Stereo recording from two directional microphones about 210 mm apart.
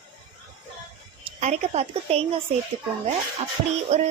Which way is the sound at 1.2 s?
30° right (ahead or behind).